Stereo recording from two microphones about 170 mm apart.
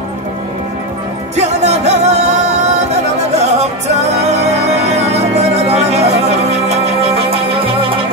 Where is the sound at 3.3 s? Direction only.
40° right (ahead or behind).